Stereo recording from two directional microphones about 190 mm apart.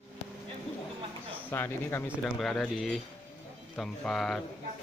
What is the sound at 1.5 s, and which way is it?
Speech, 10° left (ahead or behind).